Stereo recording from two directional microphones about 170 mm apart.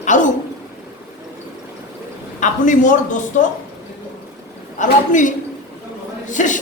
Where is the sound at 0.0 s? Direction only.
50° left (ahead or behind).